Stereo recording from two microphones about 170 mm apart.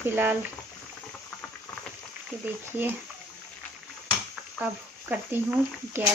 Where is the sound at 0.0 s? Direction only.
10° right (ahead or behind).